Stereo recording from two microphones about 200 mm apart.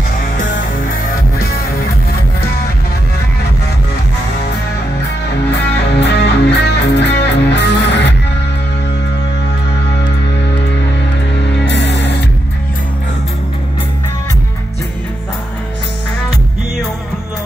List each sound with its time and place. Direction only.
5.5 s music: 60° left (ahead or behind)
11.4 s music: 60° left (ahead or behind)